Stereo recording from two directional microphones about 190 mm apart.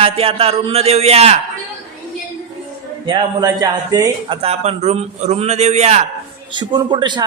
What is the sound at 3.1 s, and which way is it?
Speech, 20° right (ahead or behind).